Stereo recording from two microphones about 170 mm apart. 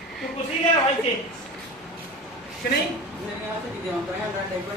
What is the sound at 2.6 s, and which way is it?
Speech, 70° left (ahead or behind).